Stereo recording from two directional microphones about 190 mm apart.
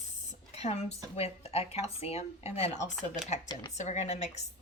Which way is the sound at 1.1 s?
30° left (ahead or behind).